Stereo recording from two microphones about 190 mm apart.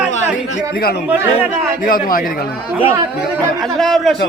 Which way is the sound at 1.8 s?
50° left (ahead or behind).